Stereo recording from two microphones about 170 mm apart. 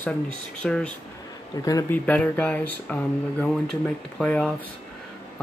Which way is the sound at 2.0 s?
10° left (ahead or behind).